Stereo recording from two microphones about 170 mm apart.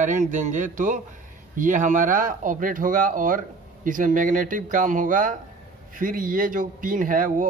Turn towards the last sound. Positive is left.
turn(degrees=-50)  # may be behind; listen again after turning